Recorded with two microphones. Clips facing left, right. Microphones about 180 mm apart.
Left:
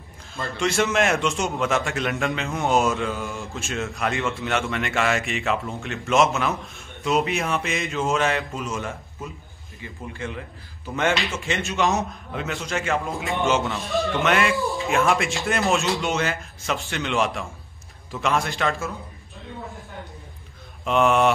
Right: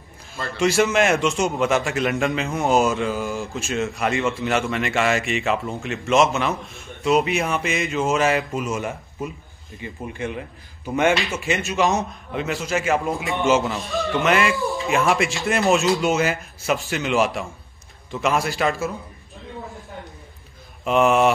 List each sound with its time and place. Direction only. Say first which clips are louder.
0.6 s a man's voice: right 4 dB; centre (ahead or behind)
20.8 s a man's voice: right 2 dB; 5° right (ahead or behind)